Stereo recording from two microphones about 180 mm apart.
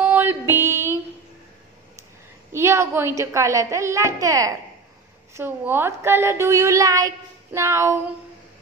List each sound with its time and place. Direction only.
0.0 s music: 10° right (ahead or behind)
0.6 s a sound: 15° right (ahead or behind)
2.5 s a woman's voice: 15° right (ahead or behind)